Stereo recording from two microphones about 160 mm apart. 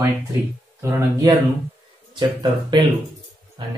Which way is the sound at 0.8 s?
15° right (ahead or behind).